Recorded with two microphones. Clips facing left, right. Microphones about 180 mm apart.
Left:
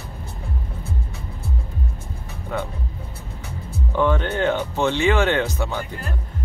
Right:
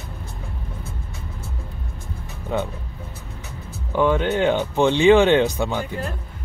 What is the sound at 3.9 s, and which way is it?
Speech, 15° right (ahead or behind).